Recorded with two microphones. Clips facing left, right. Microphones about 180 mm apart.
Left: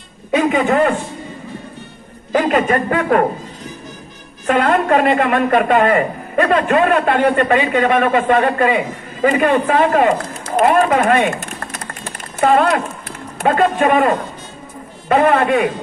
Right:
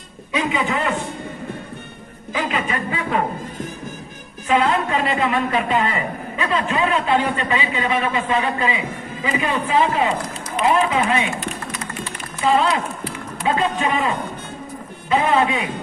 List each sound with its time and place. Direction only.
0.3 s a man's voice: 50° left (ahead or behind)
2.3 s a man's voice: 50° left (ahead or behind)
4.5 s a man's voice: 50° left (ahead or behind)
10.5 s a sound: 50° left (ahead or behind)
13.4 s a man's voice: 55° left (ahead or behind)